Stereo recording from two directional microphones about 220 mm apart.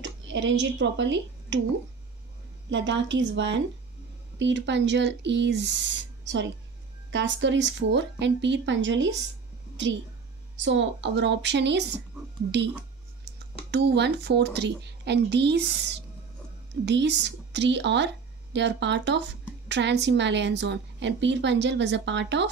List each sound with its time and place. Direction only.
0.0 s speech: 55° right (ahead or behind)
2.7 s a woman's voice: 55° right (ahead or behind)
10.6 s a woman's voice: 55° right (ahead or behind)
13.2 s a woman's voice: 50° right (ahead or behind)